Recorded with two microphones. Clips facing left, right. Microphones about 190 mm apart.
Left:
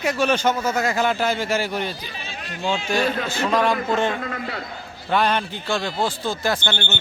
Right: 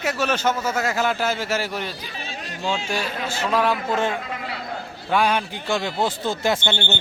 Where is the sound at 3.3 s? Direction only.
5° right (ahead or behind).